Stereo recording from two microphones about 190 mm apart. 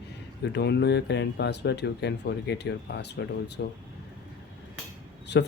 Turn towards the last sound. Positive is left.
turn(degrees=65)  # may be behind; listen again after turning